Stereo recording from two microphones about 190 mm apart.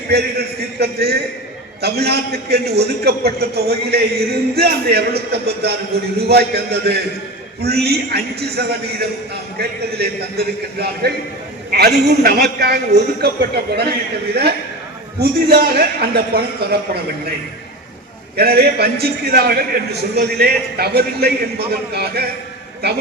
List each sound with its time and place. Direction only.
0.1 s a man's voice: 55° right (ahead or behind)
15.2 s a man's voice: 55° right (ahead or behind)
18.3 s a man's voice: 55° right (ahead or behind)